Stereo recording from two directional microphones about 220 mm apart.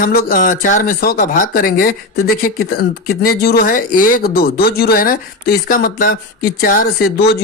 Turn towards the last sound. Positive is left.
turn(degrees=40)  # may be behind; listen again after turning